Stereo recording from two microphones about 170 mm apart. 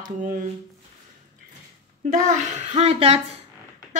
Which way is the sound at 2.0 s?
45° right (ahead or behind).